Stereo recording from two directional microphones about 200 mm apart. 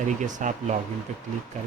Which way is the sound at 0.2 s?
40° right (ahead or behind).